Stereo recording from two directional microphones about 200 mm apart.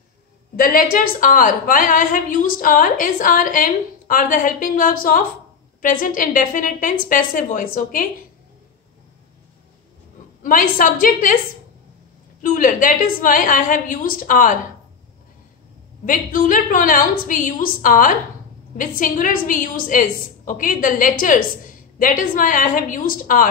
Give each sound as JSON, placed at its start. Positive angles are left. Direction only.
{"t": 0.6, "sound": "a woman's voice", "side_deg": 45}
{"t": 10.4, "sound": "a woman's voice", "side_deg": 45}
{"t": 12.4, "sound": "a woman's voice", "side_deg": 40}
{"t": 16.1, "sound": "a woman's voice", "side_deg": 45}